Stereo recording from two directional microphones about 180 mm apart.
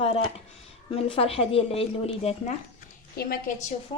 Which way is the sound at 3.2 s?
50° left (ahead or behind).